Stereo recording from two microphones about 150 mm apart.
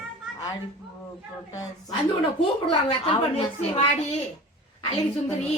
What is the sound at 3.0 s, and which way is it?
Speech, 40° left (ahead or behind).